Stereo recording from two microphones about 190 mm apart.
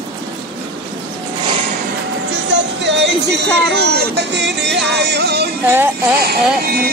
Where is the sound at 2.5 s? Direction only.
65° right (ahead or behind).